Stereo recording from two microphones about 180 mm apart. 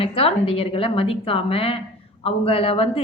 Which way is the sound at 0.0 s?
30° left (ahead or behind).